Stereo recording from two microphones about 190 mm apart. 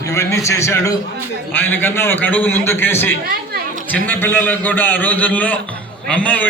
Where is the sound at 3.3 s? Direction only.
55° right (ahead or behind).